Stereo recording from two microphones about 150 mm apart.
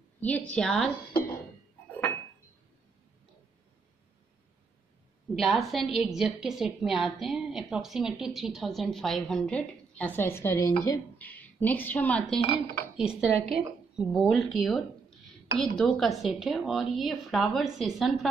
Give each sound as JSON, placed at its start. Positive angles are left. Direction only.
{"t": 0.2, "sound": "a woman's voice", "side_deg": 10}
{"t": 5.3, "sound": "a woman's voice", "side_deg": 0}
{"t": 12.4, "sound": "dishes", "side_deg": 40}
{"t": 12.9, "sound": "a woman's voice", "side_deg": -5}